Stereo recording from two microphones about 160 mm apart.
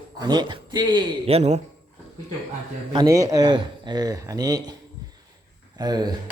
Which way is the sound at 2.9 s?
20° right (ahead or behind).